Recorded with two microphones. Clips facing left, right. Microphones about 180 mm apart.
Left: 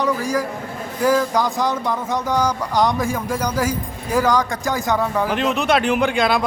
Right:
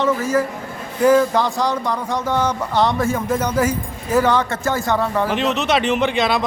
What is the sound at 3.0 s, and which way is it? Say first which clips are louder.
Speech: right 2 dB; 10° left (ahead or behind).